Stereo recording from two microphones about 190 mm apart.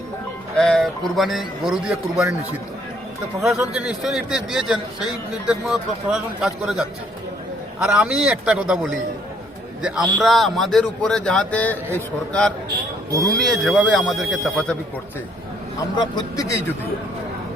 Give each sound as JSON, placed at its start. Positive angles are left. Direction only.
{"t": 0.6, "sound": "speech", "side_deg": 0}
{"t": 16.0, "sound": "speech", "side_deg": 20}